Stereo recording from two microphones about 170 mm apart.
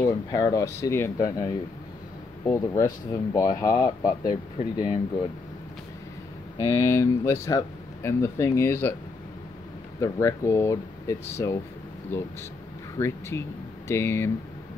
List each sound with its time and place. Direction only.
0.0 s speech: 20° left (ahead or behind)
6.7 s speech: 15° left (ahead or behind)
9.9 s speech: 20° left (ahead or behind)